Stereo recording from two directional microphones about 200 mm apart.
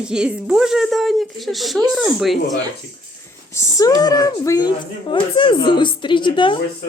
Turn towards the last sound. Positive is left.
turn(degrees=25)  # may be behind; listen again after turning